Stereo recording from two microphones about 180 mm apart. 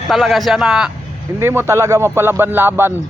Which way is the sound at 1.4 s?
15° right (ahead or behind).